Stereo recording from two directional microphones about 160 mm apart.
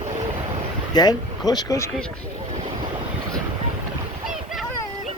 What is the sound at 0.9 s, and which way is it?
Speech, 25° left (ahead or behind).